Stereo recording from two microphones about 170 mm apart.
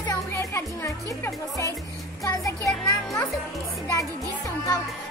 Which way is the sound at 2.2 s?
20° left (ahead or behind).